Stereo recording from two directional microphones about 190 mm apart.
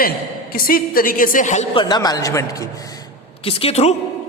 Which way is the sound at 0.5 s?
50° left (ahead or behind).